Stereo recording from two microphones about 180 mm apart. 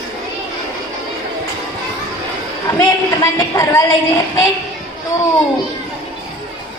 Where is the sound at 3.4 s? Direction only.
15° left (ahead or behind).